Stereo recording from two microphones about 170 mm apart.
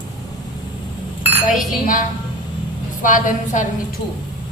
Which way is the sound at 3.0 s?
50° left (ahead or behind).